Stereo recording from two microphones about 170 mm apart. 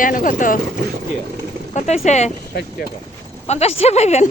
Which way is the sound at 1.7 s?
40° left (ahead or behind).